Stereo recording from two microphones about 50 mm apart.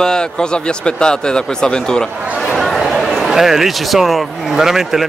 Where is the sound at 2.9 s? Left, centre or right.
Centre.